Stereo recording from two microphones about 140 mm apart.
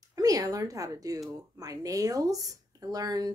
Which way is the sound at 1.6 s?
25° right (ahead or behind).